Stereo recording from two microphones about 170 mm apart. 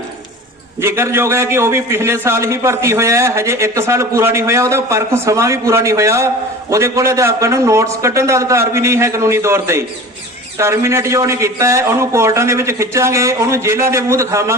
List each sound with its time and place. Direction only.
0.8 s a man's voice: 15° right (ahead or behind)